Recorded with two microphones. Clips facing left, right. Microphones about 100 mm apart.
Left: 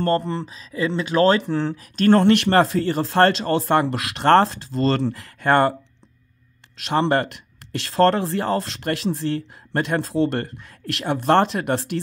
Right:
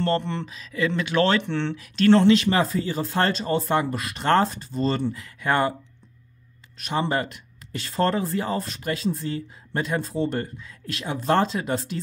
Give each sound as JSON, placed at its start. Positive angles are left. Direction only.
{"t": 0.0, "sound": "speech", "side_deg": 40}
{"t": 6.8, "sound": "speech", "side_deg": 70}